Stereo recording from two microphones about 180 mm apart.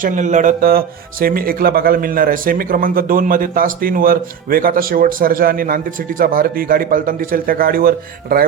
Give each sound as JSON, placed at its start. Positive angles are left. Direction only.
{"t": 0.0, "sound": "speech", "side_deg": -45}